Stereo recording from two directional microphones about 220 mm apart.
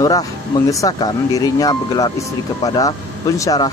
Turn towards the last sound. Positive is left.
turn(degrees=15)  # may be behind; listen again after turning